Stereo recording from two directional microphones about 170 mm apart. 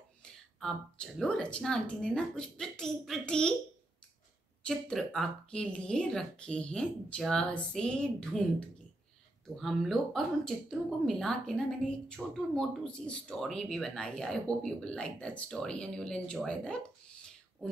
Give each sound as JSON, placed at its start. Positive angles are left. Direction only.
{"t": 0.2, "sound": "a woman's voice", "side_deg": 5}
{"t": 4.6, "sound": "a woman's voice", "side_deg": 5}